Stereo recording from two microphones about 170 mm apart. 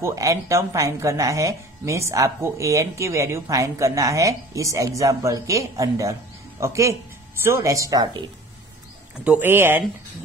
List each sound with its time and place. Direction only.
0.0 s speech: 20° right (ahead or behind)
9.2 s speech: 10° right (ahead or behind)